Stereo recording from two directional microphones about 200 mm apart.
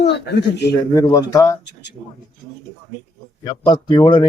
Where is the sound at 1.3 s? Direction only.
15° left (ahead or behind).